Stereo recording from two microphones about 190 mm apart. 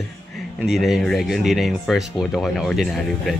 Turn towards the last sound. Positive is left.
turn(degrees=0)  # may be behind; listen again after turning